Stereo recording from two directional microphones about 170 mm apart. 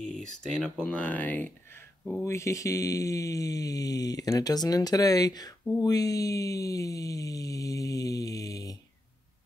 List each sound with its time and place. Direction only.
0.0 s speech: centre (ahead or behind); by 8.7 s 20° left (ahead or behind)